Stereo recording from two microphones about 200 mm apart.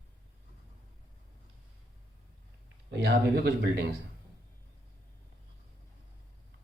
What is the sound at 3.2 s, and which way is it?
Speech, 55° right (ahead or behind).